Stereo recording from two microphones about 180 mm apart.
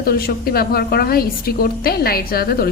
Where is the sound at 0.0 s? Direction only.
55° left (ahead or behind).